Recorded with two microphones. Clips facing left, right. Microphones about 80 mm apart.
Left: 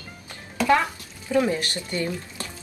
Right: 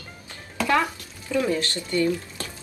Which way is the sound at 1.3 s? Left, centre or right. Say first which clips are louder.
Left 1 dB; centre.